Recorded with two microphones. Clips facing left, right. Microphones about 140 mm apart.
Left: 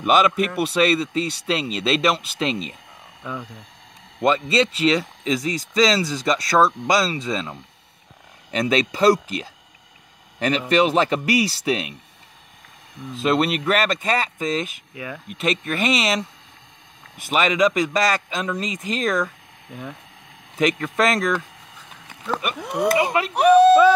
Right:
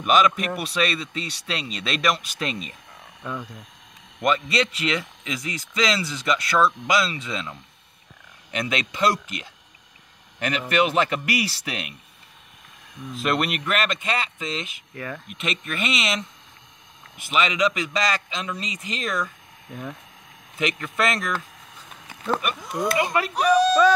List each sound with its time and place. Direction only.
0.0 s speech: 30° left (ahead or behind)
3.3 s speech: 5° left (ahead or behind)
4.2 s speech: 25° left (ahead or behind)
10.7 s speech: 35° left (ahead or behind)
13.2 s speech: 30° left (ahead or behind); by 14.8 s 45° left (ahead or behind)
15.0 s speech: 10° left (ahead or behind)
15.2 s a man's voice: 35° left (ahead or behind)
19.7 s speech: 5° left (ahead or behind)
20.5 s a man's voice: 45° left (ahead or behind)
22.6 s speech: 65° left (ahead or behind)